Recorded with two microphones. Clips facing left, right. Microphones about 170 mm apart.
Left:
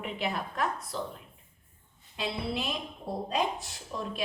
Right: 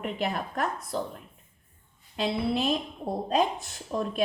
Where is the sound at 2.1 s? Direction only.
45° right (ahead or behind).